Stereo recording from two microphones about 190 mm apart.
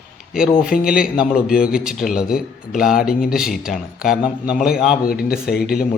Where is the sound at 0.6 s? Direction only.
5° right (ahead or behind).